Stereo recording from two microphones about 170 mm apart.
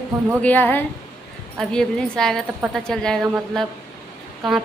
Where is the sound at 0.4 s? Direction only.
10° left (ahead or behind).